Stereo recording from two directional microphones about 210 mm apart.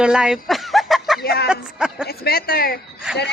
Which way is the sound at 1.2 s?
50° left (ahead or behind).